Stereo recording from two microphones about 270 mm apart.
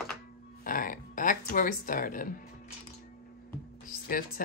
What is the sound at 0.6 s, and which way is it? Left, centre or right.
Speech, left.